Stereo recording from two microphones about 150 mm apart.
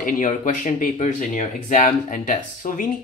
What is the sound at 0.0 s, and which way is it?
Speech, 60° left (ahead or behind).